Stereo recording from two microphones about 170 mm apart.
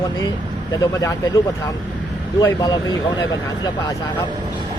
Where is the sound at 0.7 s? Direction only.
20° left (ahead or behind).